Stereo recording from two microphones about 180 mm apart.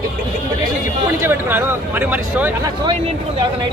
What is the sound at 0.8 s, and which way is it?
Speech, 15° right (ahead or behind).